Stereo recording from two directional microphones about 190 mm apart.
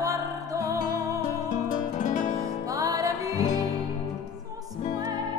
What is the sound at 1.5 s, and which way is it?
Music, 40° left (ahead or behind).